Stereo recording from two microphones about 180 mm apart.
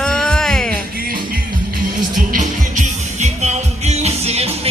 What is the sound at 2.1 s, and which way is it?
Music, 45° right (ahead or behind).